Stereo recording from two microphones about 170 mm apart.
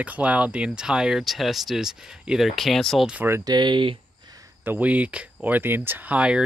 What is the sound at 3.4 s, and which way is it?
Speech, 25° right (ahead or behind).